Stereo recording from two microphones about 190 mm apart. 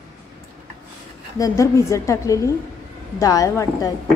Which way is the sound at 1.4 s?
15° left (ahead or behind).